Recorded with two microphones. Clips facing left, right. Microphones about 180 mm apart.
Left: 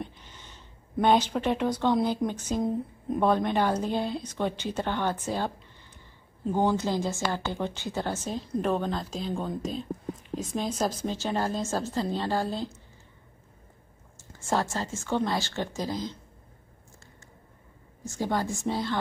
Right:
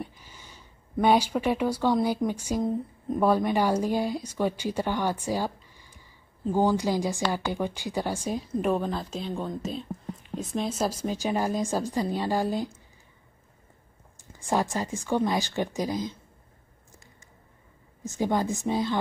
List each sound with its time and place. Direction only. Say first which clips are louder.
0.0 s a sound: even; 10° right (ahead or behind)
1.0 s speech: right 1 dB; 10° right (ahead or behind)
14.3 s speech: right 2 dB; 15° right (ahead or behind)
18.0 s a woman's voice: right 3 dB; 20° right (ahead or behind)